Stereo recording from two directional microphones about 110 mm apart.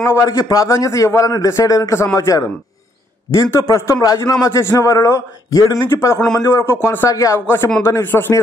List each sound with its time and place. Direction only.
0.0 s a man's voice: 30° left (ahead or behind)
5.9 s a man's voice: 20° left (ahead or behind)